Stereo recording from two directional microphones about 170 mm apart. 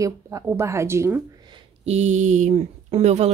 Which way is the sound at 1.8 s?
40° right (ahead or behind).